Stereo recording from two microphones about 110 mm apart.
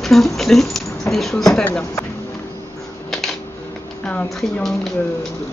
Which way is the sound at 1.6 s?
20° left (ahead or behind).